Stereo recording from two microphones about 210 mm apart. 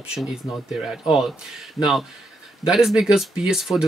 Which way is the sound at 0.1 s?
5° right (ahead or behind).